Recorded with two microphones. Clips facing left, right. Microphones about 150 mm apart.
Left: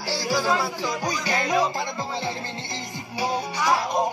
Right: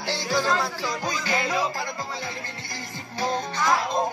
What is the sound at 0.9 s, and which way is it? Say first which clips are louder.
Speech: left 1 dB; 15° left (ahead or behind).